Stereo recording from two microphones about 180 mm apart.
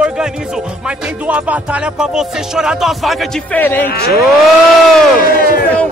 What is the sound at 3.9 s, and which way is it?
Speech, 60° left (ahead or behind).